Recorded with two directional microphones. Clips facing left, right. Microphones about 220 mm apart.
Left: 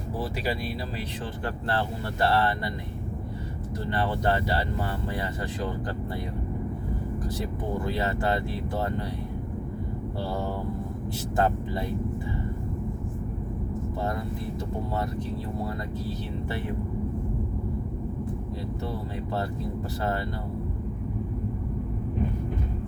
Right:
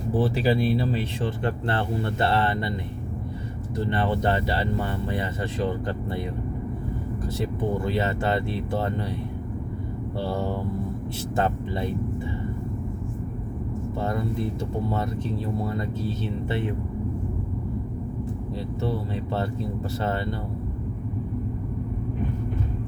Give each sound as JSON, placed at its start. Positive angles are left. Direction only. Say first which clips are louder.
{"t": 0.2, "sound": "speech", "louder": "right 8 dB", "side_deg": -30}
{"t": 3.8, "sound": "speech", "louder": "right 2 dB", "side_deg": -25}
{"t": 7.9, "sound": "speech", "louder": "left 1 dB", "side_deg": -25}
{"t": 11.3, "sound": "speech", "louder": "even", "side_deg": -25}
{"t": 16.5, "sound": "speech", "louder": "right 5 dB", "side_deg": -20}